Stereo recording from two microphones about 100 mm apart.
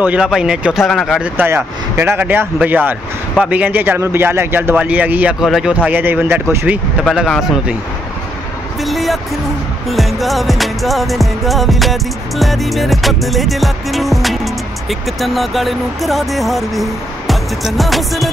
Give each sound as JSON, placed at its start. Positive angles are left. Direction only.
{"t": 0.0, "sound": "speech", "side_deg": -15}
{"t": 0.8, "sound": "music", "side_deg": 5}
{"t": 1.2, "sound": "speech", "side_deg": -20}
{"t": 5.4, "sound": "music", "side_deg": -5}
{"t": 5.9, "sound": "speech", "side_deg": -20}
{"t": 8.8, "sound": "music", "side_deg": 0}